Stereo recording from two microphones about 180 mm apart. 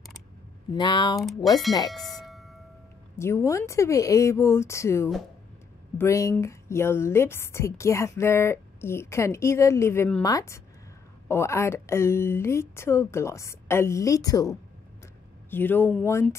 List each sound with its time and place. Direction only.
0.7 s speech: 25° left (ahead or behind)
1.2 s speech: centre (ahead or behind)
1.9 s doorbell: centre (ahead or behind)
3.2 s a woman's voice: 15° left (ahead or behind)